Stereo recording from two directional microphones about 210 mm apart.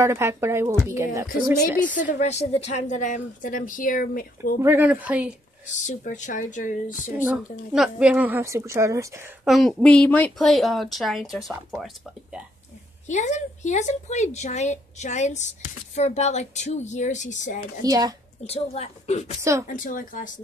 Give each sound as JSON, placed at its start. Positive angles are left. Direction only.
{"t": 0.0, "sound": "a woman's voice", "side_deg": -10}
{"t": 2.0, "sound": "speech", "side_deg": 35}
{"t": 4.6, "sound": "a woman's voice", "side_deg": -10}
{"t": 5.7, "sound": "speech", "side_deg": 35}
{"t": 7.7, "sound": "a woman's voice", "side_deg": -5}
{"t": 9.5, "sound": "speech", "side_deg": 0}
{"t": 13.1, "sound": "speech", "side_deg": 35}
{"t": 17.8, "sound": "a woman's voice", "side_deg": -20}
{"t": 18.4, "sound": "speech", "side_deg": 30}